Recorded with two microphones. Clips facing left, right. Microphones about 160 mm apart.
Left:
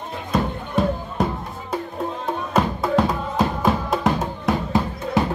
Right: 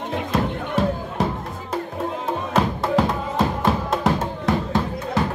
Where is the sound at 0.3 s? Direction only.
5° right (ahead or behind).